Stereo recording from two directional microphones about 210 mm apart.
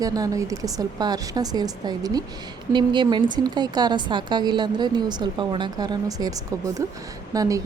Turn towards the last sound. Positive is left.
turn(degrees=-15)  # may be behind; listen again after turning